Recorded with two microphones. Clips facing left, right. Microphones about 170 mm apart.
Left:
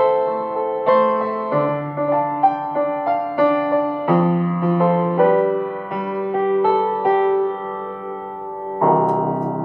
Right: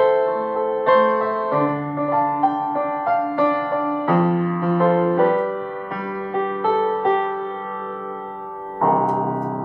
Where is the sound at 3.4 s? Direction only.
15° left (ahead or behind).